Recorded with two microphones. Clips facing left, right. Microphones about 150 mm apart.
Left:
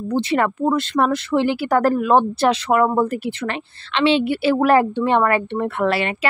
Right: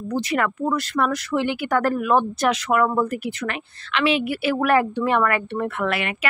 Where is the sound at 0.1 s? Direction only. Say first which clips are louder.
Left 4 dB; 30° left (ahead or behind).